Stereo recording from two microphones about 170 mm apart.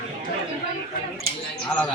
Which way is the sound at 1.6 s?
5° left (ahead or behind).